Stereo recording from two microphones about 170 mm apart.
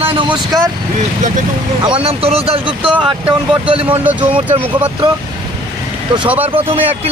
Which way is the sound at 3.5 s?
30° right (ahead or behind).